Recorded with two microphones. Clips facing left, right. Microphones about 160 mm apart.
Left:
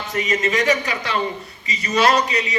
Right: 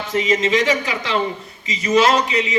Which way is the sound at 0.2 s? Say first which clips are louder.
Right 3 dB; 90° right.